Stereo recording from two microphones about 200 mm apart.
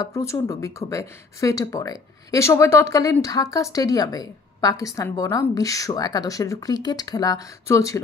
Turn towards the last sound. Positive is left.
turn(degrees=15)  # may be behind; listen again after turning